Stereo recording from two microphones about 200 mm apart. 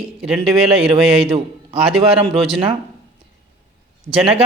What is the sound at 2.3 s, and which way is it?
Speech, 25° right (ahead or behind).